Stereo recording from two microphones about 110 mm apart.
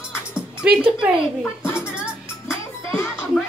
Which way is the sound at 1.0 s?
10° right (ahead or behind).